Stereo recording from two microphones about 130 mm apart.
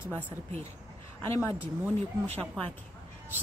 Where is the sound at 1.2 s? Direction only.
20° left (ahead or behind).